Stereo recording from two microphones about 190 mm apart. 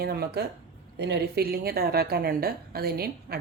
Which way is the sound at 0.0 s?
55° right (ahead or behind).